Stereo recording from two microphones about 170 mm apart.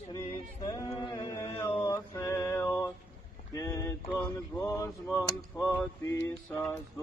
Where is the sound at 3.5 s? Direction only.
20° left (ahead or behind).